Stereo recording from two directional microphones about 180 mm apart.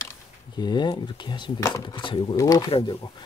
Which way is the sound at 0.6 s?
25° left (ahead or behind).